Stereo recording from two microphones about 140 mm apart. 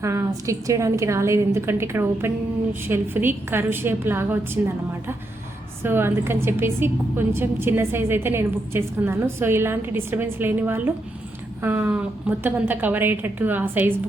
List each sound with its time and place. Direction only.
0.0 s a woman's voice: 20° right (ahead or behind)
5.8 s a woman's voice: 15° right (ahead or behind)